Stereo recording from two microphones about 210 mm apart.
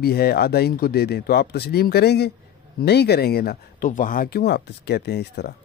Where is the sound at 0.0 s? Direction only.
50° left (ahead or behind).